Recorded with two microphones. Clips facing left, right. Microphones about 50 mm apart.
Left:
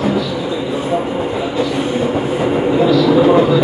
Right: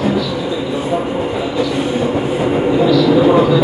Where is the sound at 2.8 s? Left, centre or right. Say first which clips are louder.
Even; centre.